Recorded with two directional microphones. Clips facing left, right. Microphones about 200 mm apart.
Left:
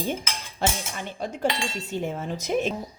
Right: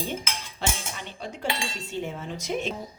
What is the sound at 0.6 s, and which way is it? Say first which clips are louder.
A woman's voice: left 5 dB; 45° left (ahead or behind).